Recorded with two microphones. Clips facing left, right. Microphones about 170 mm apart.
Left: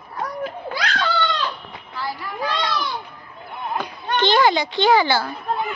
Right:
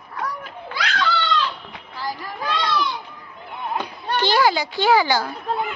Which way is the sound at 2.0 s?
40° right (ahead or behind).